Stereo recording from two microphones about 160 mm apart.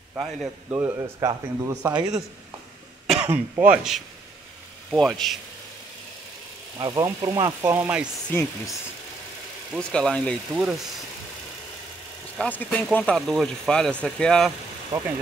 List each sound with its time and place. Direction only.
0.7 s speech: 15° right (ahead or behind)
3.3 s speech: 10° right (ahead or behind)
6.8 s speech: 20° right (ahead or behind)
7.7 s speech: 10° right (ahead or behind)
8.3 s speech: 15° left (ahead or behind)
9.8 s speech: 5° left (ahead or behind)
12.4 s speech: 10° left (ahead or behind)
14.9 s speech: 15° right (ahead or behind)